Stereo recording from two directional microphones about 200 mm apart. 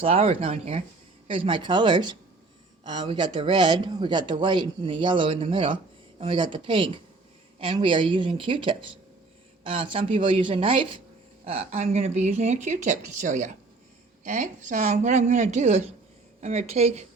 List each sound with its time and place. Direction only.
0.0 s speech: 30° right (ahead or behind)